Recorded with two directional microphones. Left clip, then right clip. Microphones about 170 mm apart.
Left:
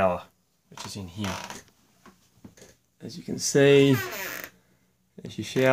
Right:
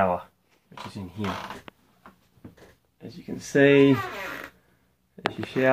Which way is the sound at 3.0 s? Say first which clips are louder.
Left 2 dB; 70° left (ahead or behind).